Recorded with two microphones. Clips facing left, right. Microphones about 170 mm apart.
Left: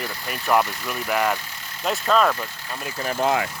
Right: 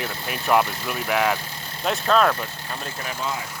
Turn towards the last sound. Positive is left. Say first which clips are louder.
# left 8 dB
turn(degrees=70)  # may be behind; listen again after turning